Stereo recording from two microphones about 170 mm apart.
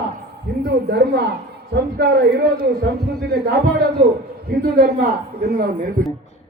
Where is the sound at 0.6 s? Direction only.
75° right (ahead or behind).